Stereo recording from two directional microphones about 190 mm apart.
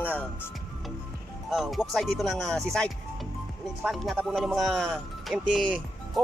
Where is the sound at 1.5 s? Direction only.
Centre (ahead or behind).